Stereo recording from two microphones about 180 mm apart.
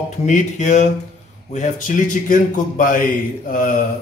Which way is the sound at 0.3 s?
40° left (ahead or behind).